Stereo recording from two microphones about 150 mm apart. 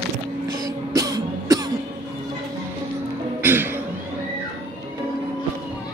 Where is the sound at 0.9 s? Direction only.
25° right (ahead or behind).